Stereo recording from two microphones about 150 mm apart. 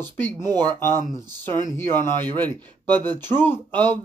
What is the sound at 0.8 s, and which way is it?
A man's voice, 15° left (ahead or behind).